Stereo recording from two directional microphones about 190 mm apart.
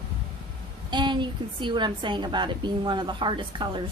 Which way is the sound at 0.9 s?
25° right (ahead or behind).